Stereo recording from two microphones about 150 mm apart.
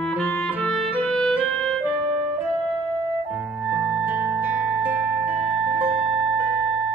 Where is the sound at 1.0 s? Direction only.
5° left (ahead or behind).